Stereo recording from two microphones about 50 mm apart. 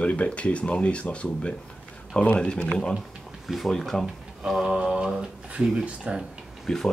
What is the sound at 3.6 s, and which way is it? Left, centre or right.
Speech, centre.